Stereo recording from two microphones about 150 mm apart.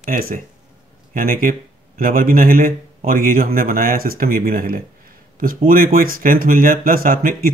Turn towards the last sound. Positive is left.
turn(degrees=-75)  # may be behind; listen again after turning